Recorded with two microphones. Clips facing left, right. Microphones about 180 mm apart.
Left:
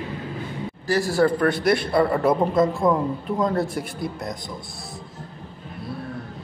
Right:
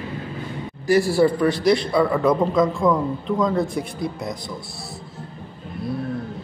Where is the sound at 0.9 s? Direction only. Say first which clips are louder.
Right 5 dB; 40° left (ahead or behind).